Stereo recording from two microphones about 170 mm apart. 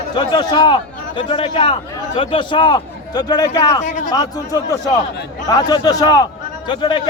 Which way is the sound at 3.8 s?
50° left (ahead or behind).